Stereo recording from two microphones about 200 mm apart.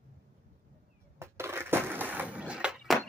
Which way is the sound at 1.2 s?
10° right (ahead or behind).